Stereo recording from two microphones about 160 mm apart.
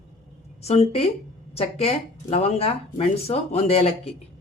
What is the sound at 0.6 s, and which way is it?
Speech, 40° left (ahead or behind).